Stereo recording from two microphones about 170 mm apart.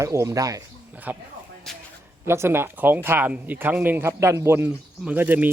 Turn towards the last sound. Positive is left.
turn(degrees=-10)  # may be behind; listen again after turning